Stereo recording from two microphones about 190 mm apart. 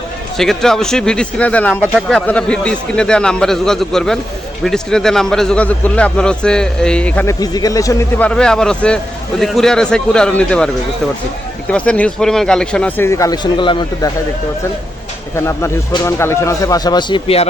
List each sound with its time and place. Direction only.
0.3 s a man's voice: centre (ahead or behind)
7.3 s speech: 20° left (ahead or behind)
8.3 s a man's voice: 5° left (ahead or behind)
11.7 s speech: 5° left (ahead or behind); by 14.1 s 25° left (ahead or behind)
15.4 s speech: 15° left (ahead or behind)